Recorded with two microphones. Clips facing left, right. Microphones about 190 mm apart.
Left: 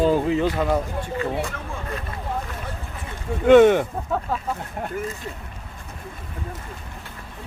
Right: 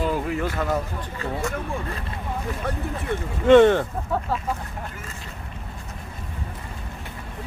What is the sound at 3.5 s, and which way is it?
Speech, 10° left (ahead or behind).